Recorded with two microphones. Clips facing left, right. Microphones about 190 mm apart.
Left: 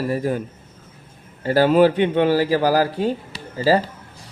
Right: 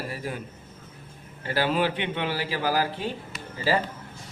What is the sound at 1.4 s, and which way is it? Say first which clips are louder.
Speech: left 11 dB; 40° left (ahead or behind).